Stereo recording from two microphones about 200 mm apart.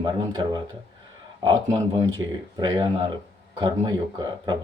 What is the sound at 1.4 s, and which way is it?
Speech, 20° right (ahead or behind).